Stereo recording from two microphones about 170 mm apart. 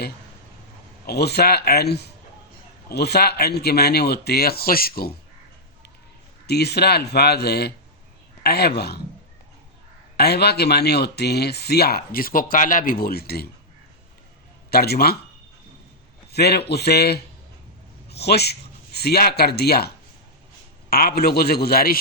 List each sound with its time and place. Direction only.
1.0 s speech: 70° left (ahead or behind)
6.5 s speech: 75° left (ahead or behind)
10.2 s speech: 70° left (ahead or behind)
14.7 s a man's voice: 65° left (ahead or behind)
16.3 s speech: 70° left (ahead or behind)
20.9 s a man's voice: 65° left (ahead or behind)